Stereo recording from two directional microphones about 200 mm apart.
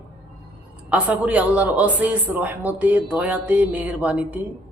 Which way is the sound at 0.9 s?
5° right (ahead or behind).